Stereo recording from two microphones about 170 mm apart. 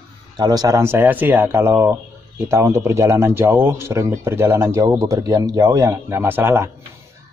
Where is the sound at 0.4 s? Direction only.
25° right (ahead or behind).